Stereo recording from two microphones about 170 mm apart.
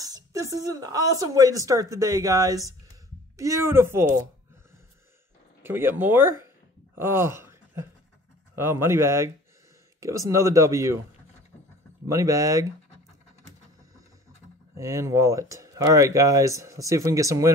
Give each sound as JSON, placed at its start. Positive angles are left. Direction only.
{"t": 0.0, "sound": "speech", "side_deg": -20}
{"t": 5.6, "sound": "speech", "side_deg": -15}
{"t": 12.1, "sound": "speech", "side_deg": -20}
{"t": 14.8, "sound": "speech", "side_deg": -15}